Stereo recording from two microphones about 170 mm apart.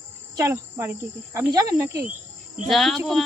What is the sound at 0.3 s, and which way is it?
Speech, 15° right (ahead or behind).